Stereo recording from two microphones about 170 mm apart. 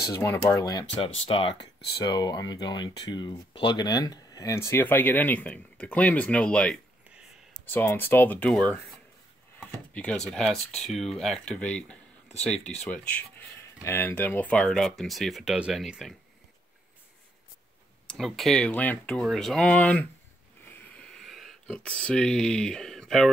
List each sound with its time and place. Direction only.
0.1 s speech: 15° left (ahead or behind); by 16.2 s centre (ahead or behind)
18.0 s speech: centre (ahead or behind)
20.9 s a sound: 5° left (ahead or behind)